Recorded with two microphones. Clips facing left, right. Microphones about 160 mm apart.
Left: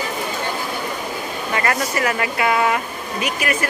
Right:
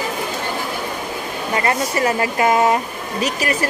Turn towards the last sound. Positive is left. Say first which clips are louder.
# right 2 dB
turn(degrees=-35)  # may be behind; listen again after turning